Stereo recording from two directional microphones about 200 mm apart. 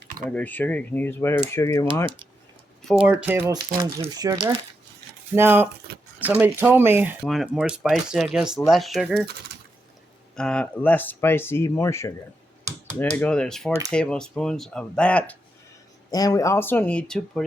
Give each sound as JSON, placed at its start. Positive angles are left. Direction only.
{"t": 0.3, "sound": "speech", "side_deg": 5}
{"t": 3.1, "sound": "speech", "side_deg": -10}
{"t": 10.3, "sound": "speech", "side_deg": 5}
{"t": 16.0, "sound": "speech", "side_deg": 20}